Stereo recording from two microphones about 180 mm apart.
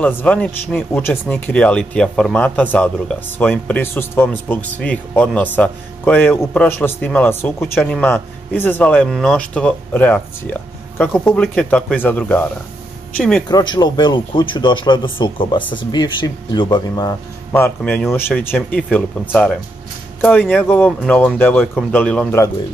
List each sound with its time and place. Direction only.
0.0 s speech: 10° left (ahead or behind)
13.5 s speech: 20° left (ahead or behind); by 22.4 s 5° left (ahead or behind)